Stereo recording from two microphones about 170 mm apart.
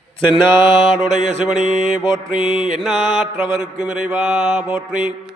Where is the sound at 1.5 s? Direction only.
Centre (ahead or behind).